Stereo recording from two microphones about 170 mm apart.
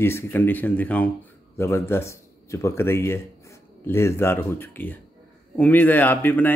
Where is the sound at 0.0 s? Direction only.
15° left (ahead or behind).